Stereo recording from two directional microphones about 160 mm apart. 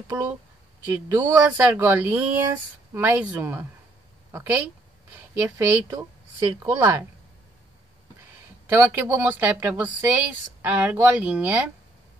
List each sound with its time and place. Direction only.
0.1 s a woman's voice: 10° right (ahead or behind)
8.6 s a woman's voice: 15° right (ahead or behind)